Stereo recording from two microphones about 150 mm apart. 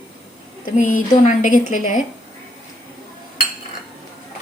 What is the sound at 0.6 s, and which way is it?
A woman's voice, 65° left (ahead or behind).